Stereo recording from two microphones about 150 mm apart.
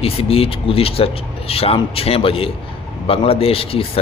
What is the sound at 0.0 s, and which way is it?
A man's voice, 40° left (ahead or behind).